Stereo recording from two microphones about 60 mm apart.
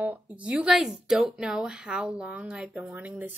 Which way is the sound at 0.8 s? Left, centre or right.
Centre.